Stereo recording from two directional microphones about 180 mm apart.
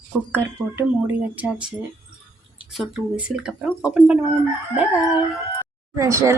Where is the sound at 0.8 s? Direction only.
10° right (ahead or behind).